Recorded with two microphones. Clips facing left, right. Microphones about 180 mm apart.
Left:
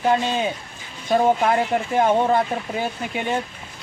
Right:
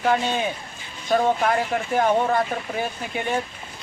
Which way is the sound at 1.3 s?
20° left (ahead or behind).